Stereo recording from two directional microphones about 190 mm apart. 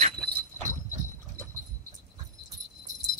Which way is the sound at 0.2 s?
50° right (ahead or behind).